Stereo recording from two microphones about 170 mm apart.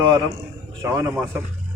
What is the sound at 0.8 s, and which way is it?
Speech, 15° right (ahead or behind).